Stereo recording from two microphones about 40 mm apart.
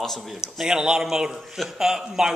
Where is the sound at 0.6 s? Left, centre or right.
Centre.